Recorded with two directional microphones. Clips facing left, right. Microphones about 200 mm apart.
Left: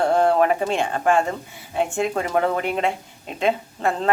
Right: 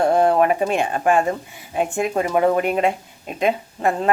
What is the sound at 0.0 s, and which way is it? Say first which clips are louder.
Speech: right 2 dB; 15° right (ahead or behind).